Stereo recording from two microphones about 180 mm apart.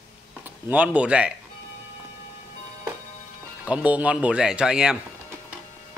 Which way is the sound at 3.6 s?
5° right (ahead or behind).